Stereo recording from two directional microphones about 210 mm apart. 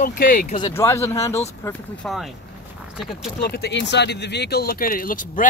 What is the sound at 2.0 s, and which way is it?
Speech, centre (ahead or behind).